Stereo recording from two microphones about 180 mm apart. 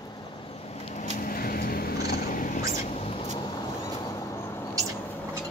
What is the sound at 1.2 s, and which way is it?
Cat, 55° left (ahead or behind).